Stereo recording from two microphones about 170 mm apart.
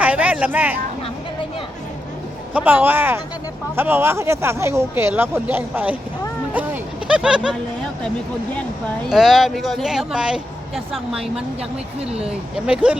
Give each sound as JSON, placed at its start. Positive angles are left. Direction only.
{"t": 0.0, "sound": "a sound", "side_deg": -10}
{"t": 2.5, "sound": "speech", "side_deg": -10}
{"t": 7.1, "sound": "speech", "side_deg": -5}
{"t": 9.0, "sound": "speech", "side_deg": 0}
{"t": 11.9, "sound": "speech", "side_deg": -35}
{"t": 12.2, "sound": "speech", "side_deg": -5}